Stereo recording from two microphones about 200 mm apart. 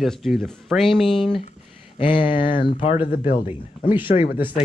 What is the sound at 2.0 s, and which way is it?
Speech, 25° left (ahead or behind).